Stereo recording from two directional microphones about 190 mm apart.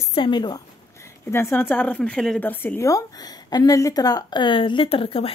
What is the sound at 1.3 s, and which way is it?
A woman's voice, 10° left (ahead or behind).